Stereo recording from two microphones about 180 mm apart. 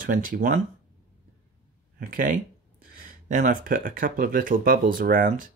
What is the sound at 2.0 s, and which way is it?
Speech, 50° right (ahead or behind).